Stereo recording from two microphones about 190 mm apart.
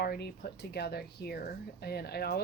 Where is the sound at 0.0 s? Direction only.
55° left (ahead or behind).